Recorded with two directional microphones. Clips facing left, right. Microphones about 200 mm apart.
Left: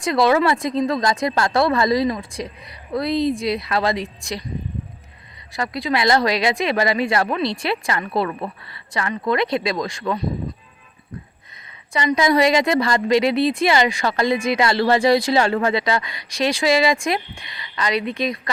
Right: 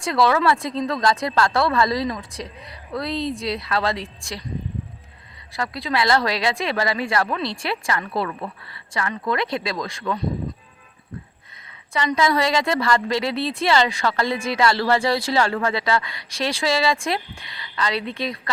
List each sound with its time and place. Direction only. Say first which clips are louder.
0.0 s a woman's voice: left 2 dB; 15° left (ahead or behind)
5.5 s a woman's voice: left 2 dB; 15° left (ahead or behind)
11.5 s a woman's voice: left 1 dB; 15° left (ahead or behind)